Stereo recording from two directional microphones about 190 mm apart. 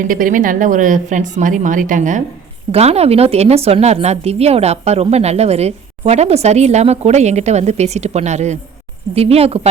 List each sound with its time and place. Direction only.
0.0 s a woman's voice: 45° right (ahead or behind)